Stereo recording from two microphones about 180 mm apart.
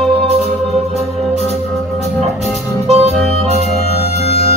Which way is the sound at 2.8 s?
35° right (ahead or behind).